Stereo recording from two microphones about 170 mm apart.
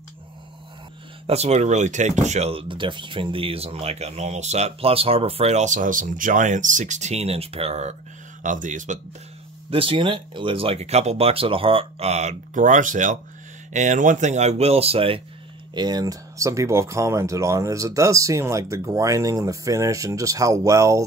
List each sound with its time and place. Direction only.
1.2 s speech: 40° right (ahead or behind)
8.4 s speech: 50° right (ahead or behind)
9.7 s speech: 30° right (ahead or behind)